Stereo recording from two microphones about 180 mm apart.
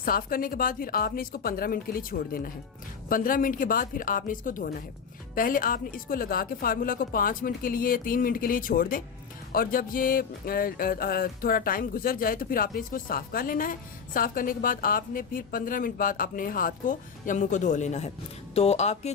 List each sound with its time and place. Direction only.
0.0 s speech: 55° left (ahead or behind); by 19.1 s 35° left (ahead or behind)